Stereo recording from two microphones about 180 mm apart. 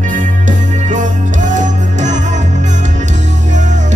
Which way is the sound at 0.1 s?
45° right (ahead or behind).